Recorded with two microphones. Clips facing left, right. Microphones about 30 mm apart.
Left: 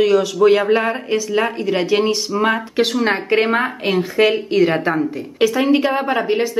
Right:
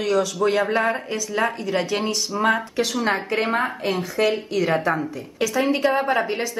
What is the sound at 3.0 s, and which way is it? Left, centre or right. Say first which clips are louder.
A woman's voice: left 6 dB; left.